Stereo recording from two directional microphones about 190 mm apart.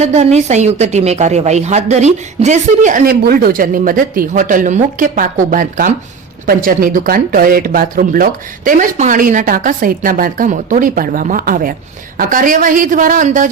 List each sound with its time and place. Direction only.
0.0 s a woman's voice: 35° right (ahead or behind)